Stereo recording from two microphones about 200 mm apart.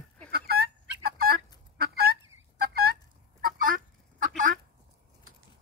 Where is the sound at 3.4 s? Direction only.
45° right (ahead or behind).